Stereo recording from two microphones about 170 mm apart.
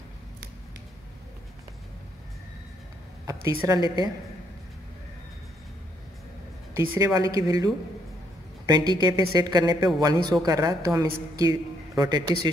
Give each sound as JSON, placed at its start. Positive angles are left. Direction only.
{"t": 3.3, "sound": "a woman's voice", "side_deg": -20}
{"t": 7.0, "sound": "a woman's voice", "side_deg": -20}